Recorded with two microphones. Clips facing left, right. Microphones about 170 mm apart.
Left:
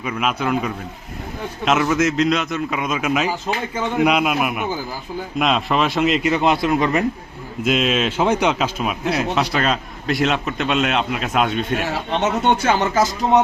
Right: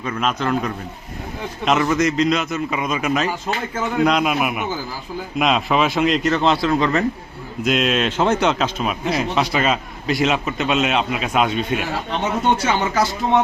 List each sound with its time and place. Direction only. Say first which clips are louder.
0.0 s a man's voice: even; 10° left (ahead or behind)
7.6 s speech: even; centre (ahead or behind)
12.9 s speech: left 2 dB; 45° left (ahead or behind)